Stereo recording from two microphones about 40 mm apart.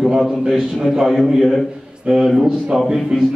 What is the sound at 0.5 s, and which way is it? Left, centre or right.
A man's voice, centre.